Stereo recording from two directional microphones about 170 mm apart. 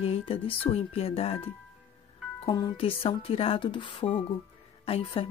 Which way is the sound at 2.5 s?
25° left (ahead or behind).